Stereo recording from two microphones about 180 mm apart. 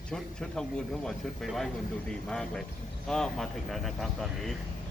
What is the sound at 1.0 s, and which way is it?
Speech, centre (ahead or behind).